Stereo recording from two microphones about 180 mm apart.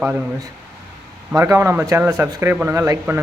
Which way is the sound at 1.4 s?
15° right (ahead or behind).